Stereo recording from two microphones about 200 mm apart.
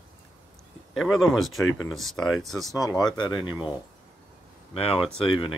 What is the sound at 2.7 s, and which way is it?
Speech, 15° left (ahead or behind).